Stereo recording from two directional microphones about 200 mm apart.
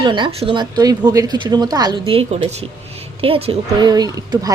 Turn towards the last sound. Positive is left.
turn(degrees=-20)  # may be behind; listen again after turning